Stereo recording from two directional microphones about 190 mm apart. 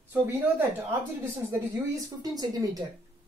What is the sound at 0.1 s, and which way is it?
Speech, 10° right (ahead or behind).